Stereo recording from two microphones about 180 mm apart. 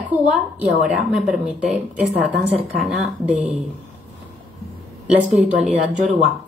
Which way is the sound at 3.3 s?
45° right (ahead or behind).